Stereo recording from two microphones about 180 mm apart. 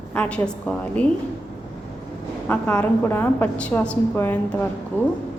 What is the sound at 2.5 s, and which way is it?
A woman's voice, 10° left (ahead or behind).